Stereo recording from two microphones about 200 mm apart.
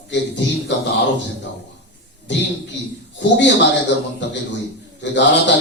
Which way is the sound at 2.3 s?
60° left (ahead or behind).